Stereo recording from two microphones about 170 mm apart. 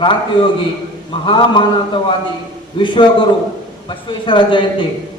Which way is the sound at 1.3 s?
30° left (ahead or behind).